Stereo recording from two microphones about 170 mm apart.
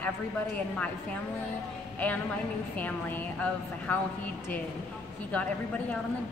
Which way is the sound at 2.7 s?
10° left (ahead or behind).